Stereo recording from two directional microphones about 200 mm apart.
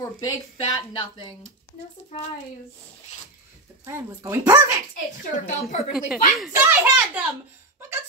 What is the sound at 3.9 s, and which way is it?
Speech, 15° right (ahead or behind).